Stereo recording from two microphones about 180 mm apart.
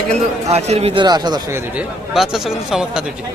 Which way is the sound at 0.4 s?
35° right (ahead or behind).